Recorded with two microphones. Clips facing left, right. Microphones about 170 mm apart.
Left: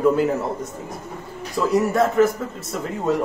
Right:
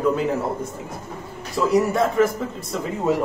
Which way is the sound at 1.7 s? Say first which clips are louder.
Left 1 dB; centre (ahead or behind).